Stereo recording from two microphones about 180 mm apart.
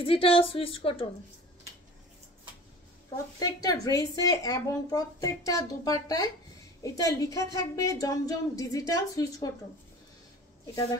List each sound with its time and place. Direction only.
0.0 s a woman's voice: 30° left (ahead or behind)
3.3 s speech: 20° left (ahead or behind)